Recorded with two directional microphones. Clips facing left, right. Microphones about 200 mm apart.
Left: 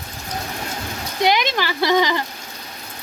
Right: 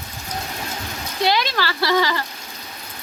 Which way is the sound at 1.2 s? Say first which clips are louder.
Left 2 dB; 20° left (ahead or behind).